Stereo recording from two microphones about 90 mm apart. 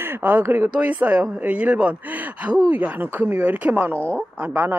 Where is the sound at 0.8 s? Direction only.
15° right (ahead or behind).